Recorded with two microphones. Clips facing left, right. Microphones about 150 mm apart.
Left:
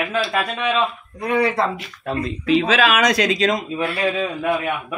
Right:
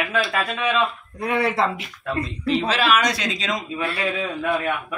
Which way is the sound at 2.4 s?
90° left.